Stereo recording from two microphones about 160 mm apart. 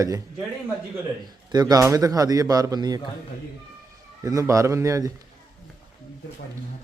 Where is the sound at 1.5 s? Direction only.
25° right (ahead or behind).